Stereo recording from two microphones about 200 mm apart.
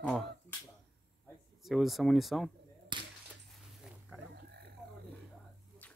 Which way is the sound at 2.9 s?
25° right (ahead or behind).